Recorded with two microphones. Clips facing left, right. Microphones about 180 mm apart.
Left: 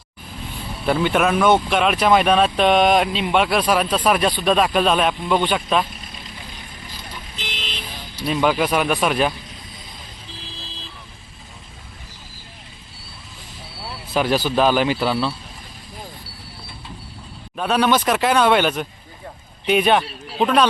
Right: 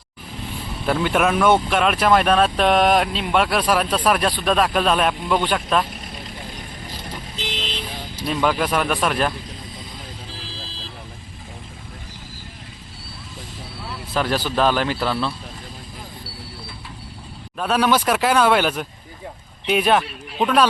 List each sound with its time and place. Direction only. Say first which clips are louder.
0.9 s speech: left 1 dB; centre (ahead or behind)
7.1 s vehicle: right 4 dB; 35° right (ahead or behind)
8.3 s speech: left 2 dB; 5° left (ahead or behind)
14.1 s speech: left 3 dB; 5° left (ahead or behind)
17.6 s speech: left 1 dB; 5° right (ahead or behind)